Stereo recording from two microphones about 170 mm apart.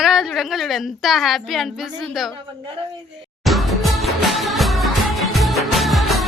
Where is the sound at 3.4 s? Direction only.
Centre (ahead or behind).